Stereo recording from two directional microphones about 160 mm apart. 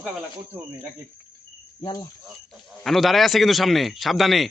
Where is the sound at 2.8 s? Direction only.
Centre (ahead or behind).